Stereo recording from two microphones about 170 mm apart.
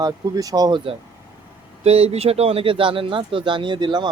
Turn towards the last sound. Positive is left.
turn(degrees=-25)  # may be behind; listen again after turning